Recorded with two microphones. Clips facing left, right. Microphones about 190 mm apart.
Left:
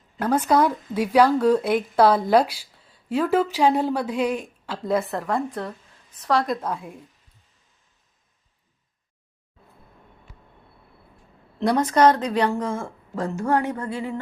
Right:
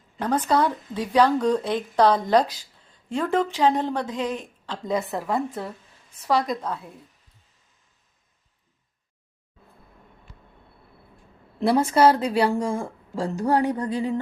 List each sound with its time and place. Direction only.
0.2 s speech: 10° left (ahead or behind)
11.6 s speech: 5° right (ahead or behind)
13.1 s a sound: 35° right (ahead or behind)
13.7 s speech: 15° right (ahead or behind)